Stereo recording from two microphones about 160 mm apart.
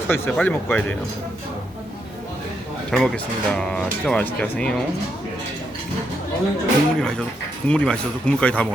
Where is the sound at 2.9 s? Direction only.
5° left (ahead or behind).